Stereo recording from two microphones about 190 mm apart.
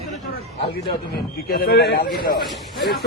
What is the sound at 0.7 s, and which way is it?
A man's voice, 55° left (ahead or behind).